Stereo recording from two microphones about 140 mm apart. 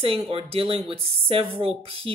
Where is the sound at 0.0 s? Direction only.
45° right (ahead or behind).